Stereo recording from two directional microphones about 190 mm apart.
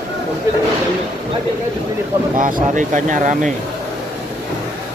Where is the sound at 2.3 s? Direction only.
40° right (ahead or behind).